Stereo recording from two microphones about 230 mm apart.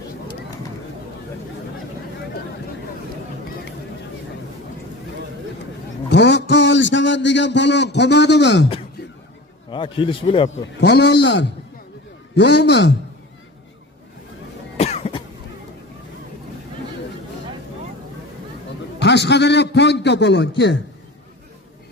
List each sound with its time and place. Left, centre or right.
6.1 s a man's voice: left
9.6 s a man's voice: left
10.5 s a man's voice: left
14.8 s cough: left
18.9 s a man's voice: left